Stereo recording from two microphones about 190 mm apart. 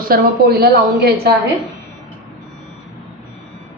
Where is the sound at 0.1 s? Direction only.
55° right (ahead or behind).